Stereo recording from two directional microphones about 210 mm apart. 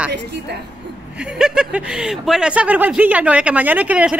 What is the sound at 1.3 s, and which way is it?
Speech, 5° right (ahead or behind).